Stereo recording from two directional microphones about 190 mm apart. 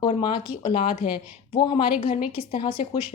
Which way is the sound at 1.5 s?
25° left (ahead or behind).